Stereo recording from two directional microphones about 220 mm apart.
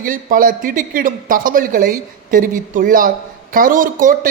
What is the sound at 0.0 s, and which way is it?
A man's voice, 40° right (ahead or behind).